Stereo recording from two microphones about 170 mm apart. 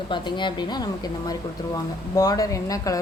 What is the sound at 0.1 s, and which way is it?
Speech, 30° left (ahead or behind).